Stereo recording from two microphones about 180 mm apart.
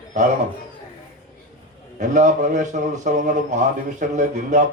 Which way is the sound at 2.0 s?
45° right (ahead or behind).